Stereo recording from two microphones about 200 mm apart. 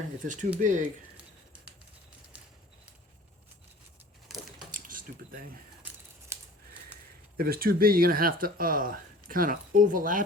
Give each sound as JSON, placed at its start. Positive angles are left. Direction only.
{"t": 0.2, "sound": "speech", "side_deg": -40}
{"t": 4.7, "sound": "a sound", "side_deg": -45}
{"t": 5.8, "sound": "scissors", "side_deg": -15}
{"t": 7.3, "sound": "speech", "side_deg": -50}